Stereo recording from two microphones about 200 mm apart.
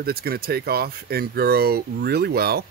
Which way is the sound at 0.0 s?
50° right (ahead or behind).